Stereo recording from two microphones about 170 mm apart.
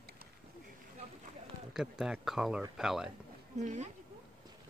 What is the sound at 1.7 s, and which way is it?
Speech, 5° right (ahead or behind).